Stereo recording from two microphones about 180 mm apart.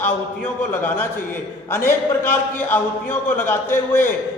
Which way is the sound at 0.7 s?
10° left (ahead or behind).